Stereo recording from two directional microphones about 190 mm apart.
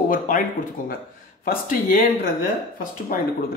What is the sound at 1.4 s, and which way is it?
Speech, 45° left (ahead or behind).